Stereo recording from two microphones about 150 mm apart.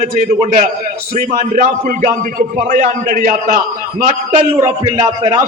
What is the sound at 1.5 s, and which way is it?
A man's voice, 60° right (ahead or behind).